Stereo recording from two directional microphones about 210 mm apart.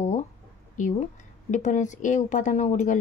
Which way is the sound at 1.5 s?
35° left (ahead or behind).